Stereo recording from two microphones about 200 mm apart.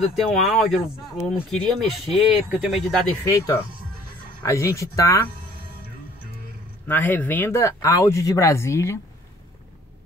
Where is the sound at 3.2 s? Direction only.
15° left (ahead or behind).